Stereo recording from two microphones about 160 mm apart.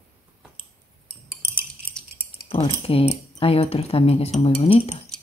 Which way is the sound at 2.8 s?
40° left (ahead or behind).